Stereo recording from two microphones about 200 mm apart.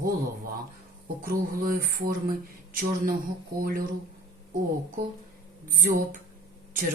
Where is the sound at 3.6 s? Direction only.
45° right (ahead or behind).